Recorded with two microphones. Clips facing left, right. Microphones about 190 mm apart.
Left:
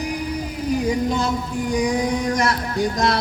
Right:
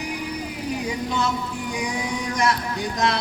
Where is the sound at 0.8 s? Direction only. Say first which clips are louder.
Left 3 dB; 40° left (ahead or behind).